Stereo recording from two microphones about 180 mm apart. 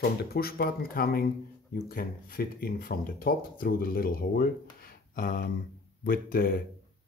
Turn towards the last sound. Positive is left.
turn(degrees=55)  # may be behind; listen again after turning